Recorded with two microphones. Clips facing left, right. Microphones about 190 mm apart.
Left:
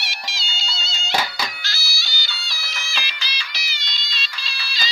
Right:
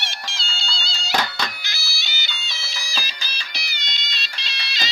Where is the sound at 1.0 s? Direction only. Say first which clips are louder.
Even; centre (ahead or behind).